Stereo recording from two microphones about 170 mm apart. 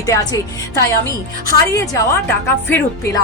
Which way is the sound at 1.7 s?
20° left (ahead or behind).